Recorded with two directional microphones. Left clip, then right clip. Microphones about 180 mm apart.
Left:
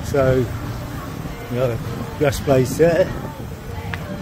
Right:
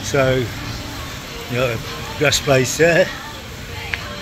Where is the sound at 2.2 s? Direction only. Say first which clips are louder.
Right 2 dB; 20° left (ahead or behind).